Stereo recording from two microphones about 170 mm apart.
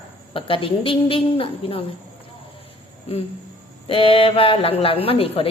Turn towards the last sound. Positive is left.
turn(degrees=35)  # may be behind; listen again after turning